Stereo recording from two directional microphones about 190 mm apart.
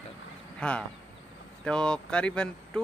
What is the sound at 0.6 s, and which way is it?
Speech, 5° left (ahead or behind).